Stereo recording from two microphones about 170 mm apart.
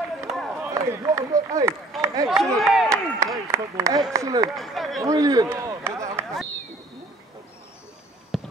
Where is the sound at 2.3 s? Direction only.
Centre (ahead or behind).